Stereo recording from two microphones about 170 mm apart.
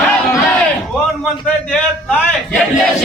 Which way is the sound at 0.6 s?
Centre (ahead or behind).